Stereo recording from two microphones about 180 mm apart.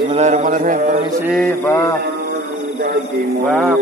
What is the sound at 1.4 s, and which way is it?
Speech, 15° left (ahead or behind).